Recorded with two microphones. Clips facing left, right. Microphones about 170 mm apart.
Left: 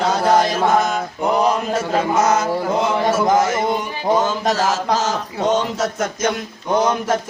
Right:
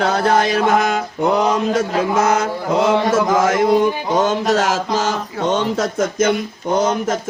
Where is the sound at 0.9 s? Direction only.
90° right.